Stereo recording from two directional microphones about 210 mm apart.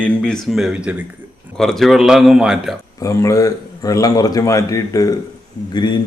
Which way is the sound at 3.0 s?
15° left (ahead or behind).